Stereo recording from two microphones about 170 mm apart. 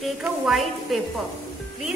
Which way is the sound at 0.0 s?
Centre (ahead or behind).